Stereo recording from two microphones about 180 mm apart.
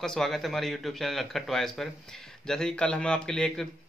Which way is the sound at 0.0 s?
Centre (ahead or behind).